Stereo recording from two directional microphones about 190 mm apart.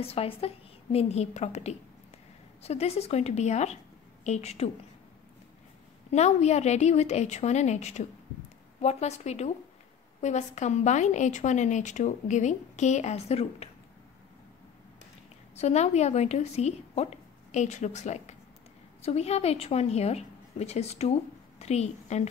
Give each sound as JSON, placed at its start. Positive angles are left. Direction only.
{"t": 0.0, "sound": "a woman's voice", "side_deg": 30}
{"t": 6.1, "sound": "a woman's voice", "side_deg": 35}
{"t": 15.5, "sound": "a woman's voice", "side_deg": 35}